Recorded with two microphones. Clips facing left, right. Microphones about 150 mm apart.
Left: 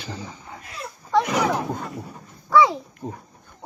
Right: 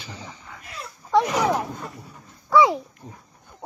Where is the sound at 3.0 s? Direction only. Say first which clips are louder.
Left 10 dB; 65° left (ahead or behind).